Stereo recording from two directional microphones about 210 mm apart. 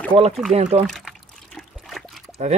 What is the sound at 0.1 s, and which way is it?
Speech, 30° right (ahead or behind).